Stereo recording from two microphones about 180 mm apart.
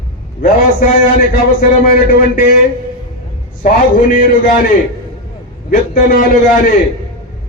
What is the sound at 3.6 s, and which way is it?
A man's voice, 50° left (ahead or behind).